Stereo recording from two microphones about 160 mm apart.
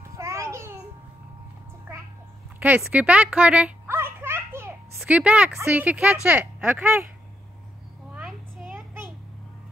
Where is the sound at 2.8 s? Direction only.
10° right (ahead or behind).